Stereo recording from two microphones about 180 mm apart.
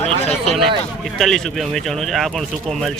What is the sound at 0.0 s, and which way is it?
Speech, 35° left (ahead or behind).